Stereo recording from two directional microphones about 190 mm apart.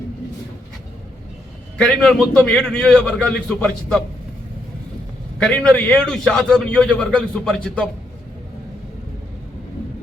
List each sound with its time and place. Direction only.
1.8 s a man's voice: 5° left (ahead or behind)
5.4 s a man's voice: 5° left (ahead or behind)